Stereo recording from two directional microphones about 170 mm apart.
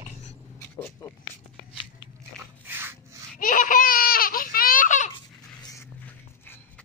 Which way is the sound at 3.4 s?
55° left (ahead or behind).